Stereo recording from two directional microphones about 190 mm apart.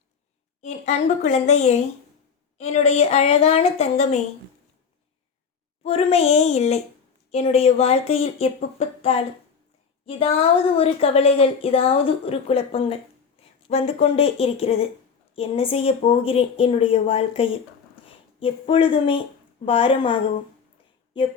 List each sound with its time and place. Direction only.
0.6 s a woman's voice: 35° left (ahead or behind)
5.8 s a woman's voice: 35° left (ahead or behind)
21.2 s a woman's voice: 30° left (ahead or behind)